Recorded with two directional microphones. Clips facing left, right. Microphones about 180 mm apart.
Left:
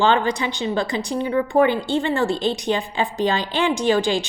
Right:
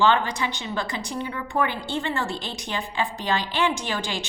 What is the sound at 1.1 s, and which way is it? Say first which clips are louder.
A woman's voice: left 9 dB; 30° left (ahead or behind).